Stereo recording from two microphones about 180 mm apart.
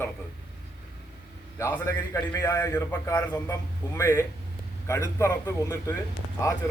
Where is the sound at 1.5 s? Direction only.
10° left (ahead or behind).